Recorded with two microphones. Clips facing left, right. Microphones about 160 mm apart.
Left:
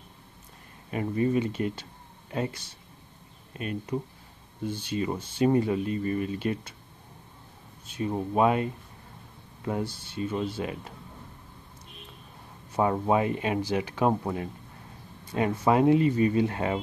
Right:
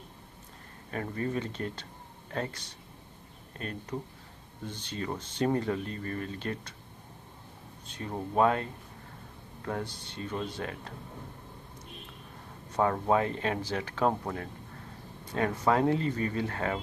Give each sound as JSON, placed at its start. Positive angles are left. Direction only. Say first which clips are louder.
{"t": 0.8, "sound": "speech", "louder": "left 7 dB", "side_deg": 10}
{"t": 7.8, "sound": "speech", "louder": "left 7 dB", "side_deg": 10}
{"t": 9.6, "sound": "a sound", "louder": "left 4 dB", "side_deg": 10}
{"t": 9.9, "sound": "speech", "louder": "left 5 dB", "side_deg": 5}
{"t": 12.7, "sound": "speech", "louder": "left 2 dB", "side_deg": 15}